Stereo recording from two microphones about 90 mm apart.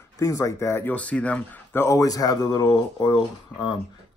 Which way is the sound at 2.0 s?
40° left (ahead or behind).